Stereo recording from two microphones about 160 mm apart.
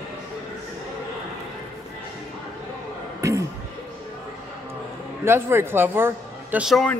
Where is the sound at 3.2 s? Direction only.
20° right (ahead or behind).